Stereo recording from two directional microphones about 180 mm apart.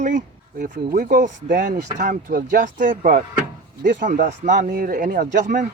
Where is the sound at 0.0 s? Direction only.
45° right (ahead or behind).